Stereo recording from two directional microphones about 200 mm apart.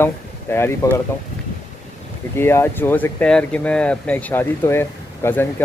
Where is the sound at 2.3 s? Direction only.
10° left (ahead or behind).